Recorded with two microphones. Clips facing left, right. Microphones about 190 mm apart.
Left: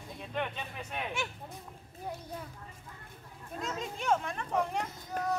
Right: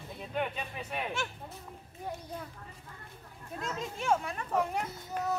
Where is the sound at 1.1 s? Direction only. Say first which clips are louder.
Right 1 dB; 15° left (ahead or behind).